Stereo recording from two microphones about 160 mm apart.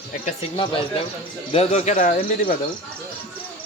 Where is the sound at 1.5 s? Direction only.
45° left (ahead or behind); by 2.5 s 65° left (ahead or behind).